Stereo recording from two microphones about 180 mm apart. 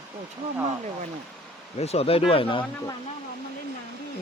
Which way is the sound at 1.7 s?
35° left (ahead or behind).